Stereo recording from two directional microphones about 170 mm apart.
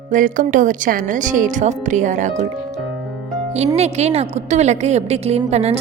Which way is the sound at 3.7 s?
40° right (ahead or behind).